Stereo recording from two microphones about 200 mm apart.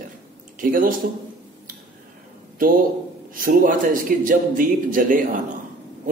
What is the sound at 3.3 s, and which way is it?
A man's voice, 45° right (ahead or behind).